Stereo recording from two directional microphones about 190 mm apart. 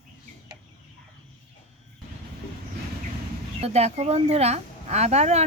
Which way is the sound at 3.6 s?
35° right (ahead or behind).